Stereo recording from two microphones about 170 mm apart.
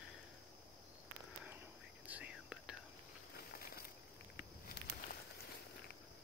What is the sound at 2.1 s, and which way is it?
Whispering, 5° right (ahead or behind).